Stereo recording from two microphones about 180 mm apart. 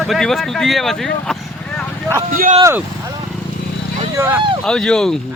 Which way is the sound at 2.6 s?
15° right (ahead or behind).